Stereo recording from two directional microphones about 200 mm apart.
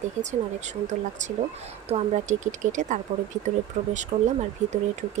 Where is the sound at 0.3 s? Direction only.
35° right (ahead or behind).